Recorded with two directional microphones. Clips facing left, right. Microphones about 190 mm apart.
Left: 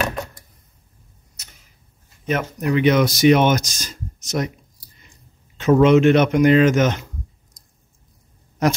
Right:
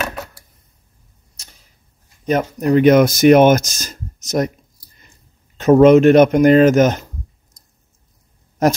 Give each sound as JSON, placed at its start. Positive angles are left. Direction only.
{"t": 0.0, "sound": "a sound", "side_deg": -5}
{"t": 2.2, "sound": "speech", "side_deg": -40}
{"t": 5.6, "sound": "speech", "side_deg": -45}